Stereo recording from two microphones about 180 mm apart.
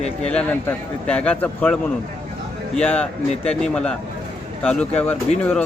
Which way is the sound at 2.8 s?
5° left (ahead or behind).